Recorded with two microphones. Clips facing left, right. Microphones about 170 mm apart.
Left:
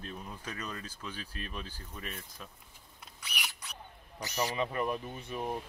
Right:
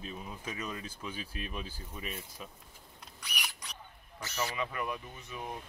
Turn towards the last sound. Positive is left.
turn(degrees=30)  # may be behind; listen again after turning